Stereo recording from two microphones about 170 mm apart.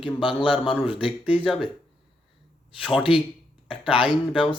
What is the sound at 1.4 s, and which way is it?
Speech, centre (ahead or behind).